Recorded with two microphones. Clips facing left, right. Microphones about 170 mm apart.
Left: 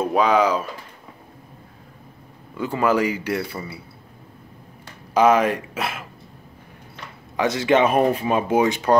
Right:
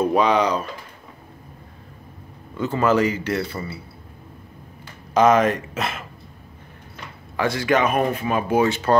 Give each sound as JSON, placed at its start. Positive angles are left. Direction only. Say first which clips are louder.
{"t": 0.0, "sound": "speech", "louder": "even", "side_deg": 5}
{"t": 2.5, "sound": "speech", "louder": "right 1 dB", "side_deg": 10}
{"t": 5.1, "sound": "speech", "louder": "right 1 dB", "side_deg": 10}
{"t": 7.3, "sound": "speech", "louder": "left 2 dB", "side_deg": 20}